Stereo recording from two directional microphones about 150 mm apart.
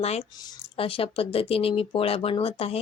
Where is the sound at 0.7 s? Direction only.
40° left (ahead or behind).